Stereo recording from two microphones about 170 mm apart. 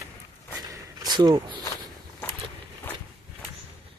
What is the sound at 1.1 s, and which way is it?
Speech, 25° right (ahead or behind).